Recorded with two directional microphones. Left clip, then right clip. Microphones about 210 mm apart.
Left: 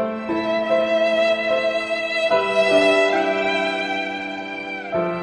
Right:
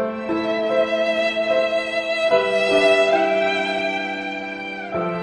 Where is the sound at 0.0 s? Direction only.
Centre (ahead or behind).